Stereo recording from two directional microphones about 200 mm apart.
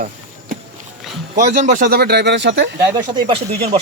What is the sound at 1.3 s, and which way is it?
Speech, 45° right (ahead or behind).